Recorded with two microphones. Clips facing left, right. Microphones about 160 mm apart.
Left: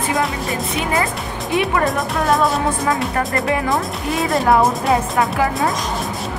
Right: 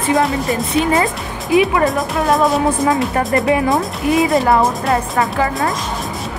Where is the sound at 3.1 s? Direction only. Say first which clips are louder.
Right 4 dB; 20° right (ahead or behind).